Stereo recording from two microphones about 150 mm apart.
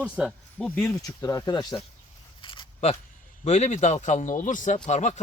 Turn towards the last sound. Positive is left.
turn(degrees=50)  # may be behind; listen again after turning